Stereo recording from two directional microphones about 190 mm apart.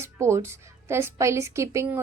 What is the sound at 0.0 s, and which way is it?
A woman's voice, 15° right (ahead or behind).